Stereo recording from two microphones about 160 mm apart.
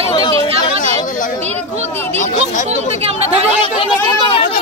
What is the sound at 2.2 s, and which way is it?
Speech, 50° left (ahead or behind).